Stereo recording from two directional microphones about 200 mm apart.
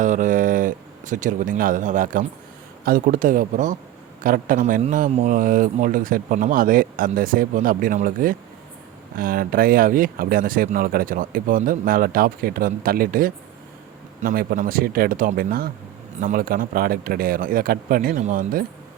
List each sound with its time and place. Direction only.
0.0 s a man's voice: 40° right (ahead or behind)